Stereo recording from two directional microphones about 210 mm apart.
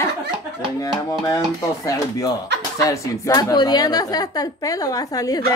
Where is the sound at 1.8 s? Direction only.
15° left (ahead or behind).